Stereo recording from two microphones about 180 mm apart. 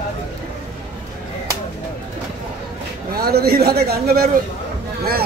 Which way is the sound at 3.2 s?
60° right (ahead or behind).